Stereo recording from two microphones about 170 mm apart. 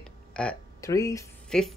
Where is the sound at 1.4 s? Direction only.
5° left (ahead or behind).